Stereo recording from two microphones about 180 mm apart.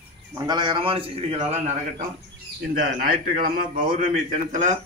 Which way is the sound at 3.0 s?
55° right (ahead or behind).